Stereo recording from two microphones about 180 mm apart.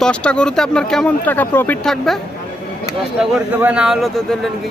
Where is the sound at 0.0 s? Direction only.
5° left (ahead or behind).